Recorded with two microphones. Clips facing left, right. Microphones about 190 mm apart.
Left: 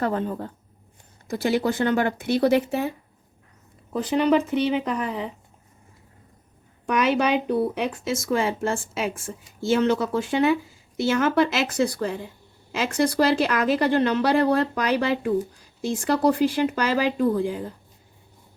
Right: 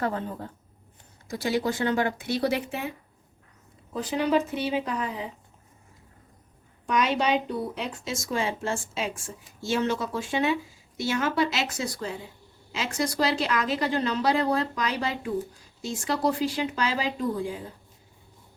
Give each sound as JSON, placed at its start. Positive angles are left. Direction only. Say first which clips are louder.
{"t": 0.0, "sound": "speech", "louder": "left 4 dB", "side_deg": 65}
{"t": 1.5, "sound": "speech", "louder": "left 4 dB", "side_deg": 55}
{"t": 3.9, "sound": "speech", "louder": "left 4 dB", "side_deg": 60}
{"t": 6.8, "sound": "speech", "louder": "left 3 dB", "side_deg": 60}